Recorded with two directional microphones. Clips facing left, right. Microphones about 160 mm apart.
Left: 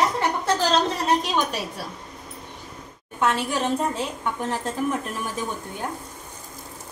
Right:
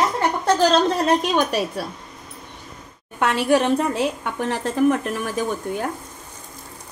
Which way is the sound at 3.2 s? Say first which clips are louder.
Right 5 dB; 65° right (ahead or behind).